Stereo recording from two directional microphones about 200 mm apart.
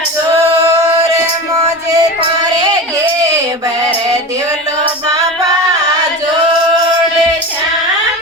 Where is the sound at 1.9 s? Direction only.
20° right (ahead or behind).